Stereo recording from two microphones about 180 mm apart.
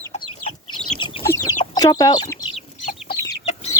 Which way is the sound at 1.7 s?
20° left (ahead or behind).